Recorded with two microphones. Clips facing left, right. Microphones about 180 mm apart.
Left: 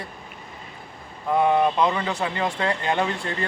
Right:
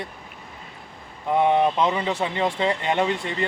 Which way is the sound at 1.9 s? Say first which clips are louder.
Right 2 dB; 5° right (ahead or behind).